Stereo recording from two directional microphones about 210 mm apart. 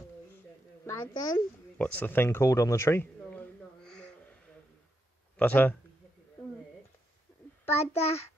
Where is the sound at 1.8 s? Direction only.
5° left (ahead or behind).